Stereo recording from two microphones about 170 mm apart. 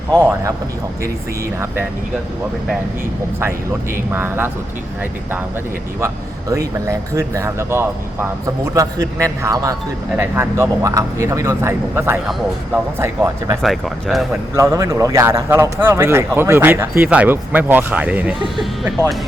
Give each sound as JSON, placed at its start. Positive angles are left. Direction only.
{"t": 0.2, "sound": "speech", "side_deg": -10}
{"t": 4.1, "sound": "speech", "side_deg": -10}
{"t": 6.5, "sound": "speech", "side_deg": -20}
{"t": 13.6, "sound": "speech", "side_deg": 0}
{"t": 14.5, "sound": "speech", "side_deg": -20}